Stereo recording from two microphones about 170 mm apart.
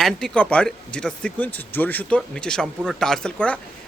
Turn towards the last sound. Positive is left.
turn(degrees=5)  # may be behind; listen again after turning